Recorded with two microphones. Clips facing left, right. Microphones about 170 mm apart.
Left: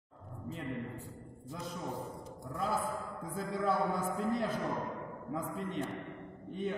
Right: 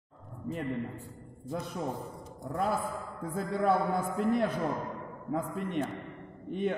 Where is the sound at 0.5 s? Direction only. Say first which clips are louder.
Right 7 dB; 65° right (ahead or behind).